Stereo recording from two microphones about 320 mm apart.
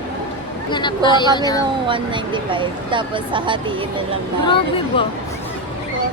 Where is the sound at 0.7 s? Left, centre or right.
Centre.